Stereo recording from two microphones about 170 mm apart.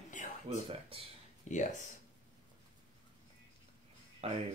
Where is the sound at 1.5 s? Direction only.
45° left (ahead or behind).